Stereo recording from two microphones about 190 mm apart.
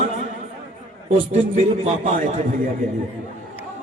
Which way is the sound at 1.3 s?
40° right (ahead or behind).